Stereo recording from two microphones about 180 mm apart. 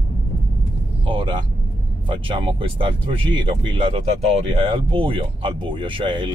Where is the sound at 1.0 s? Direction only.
25° right (ahead or behind).